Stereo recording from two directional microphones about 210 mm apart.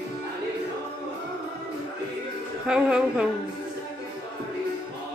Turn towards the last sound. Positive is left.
turn(degrees=-5)  # may be behind; listen again after turning